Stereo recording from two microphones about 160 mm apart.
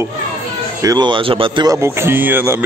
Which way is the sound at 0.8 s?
25° right (ahead or behind).